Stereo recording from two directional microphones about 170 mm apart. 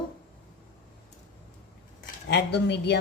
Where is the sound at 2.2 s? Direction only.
90° left.